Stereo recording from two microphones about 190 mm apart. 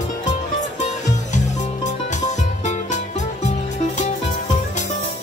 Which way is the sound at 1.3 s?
40° left (ahead or behind).